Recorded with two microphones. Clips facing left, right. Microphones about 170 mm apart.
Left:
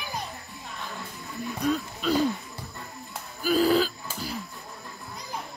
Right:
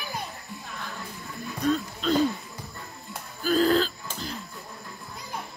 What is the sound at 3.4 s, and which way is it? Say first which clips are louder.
Throat clearing: even; 10° left (ahead or behind).